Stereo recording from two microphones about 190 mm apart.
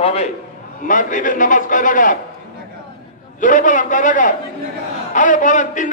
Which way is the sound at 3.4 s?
45° left (ahead or behind).